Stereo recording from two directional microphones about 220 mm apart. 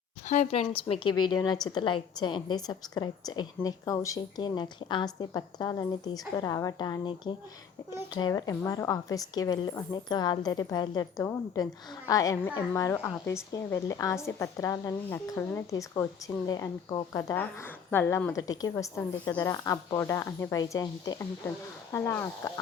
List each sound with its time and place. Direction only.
0.3 s a woman's voice: 30° left (ahead or behind); by 22.6 s 15° left (ahead or behind)